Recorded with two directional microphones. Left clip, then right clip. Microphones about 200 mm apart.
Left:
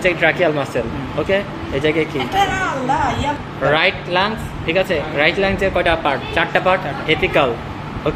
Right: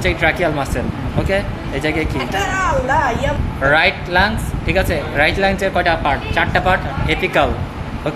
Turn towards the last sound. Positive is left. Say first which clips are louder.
# even
turn(degrees=-20)  # may be behind; listen again after turning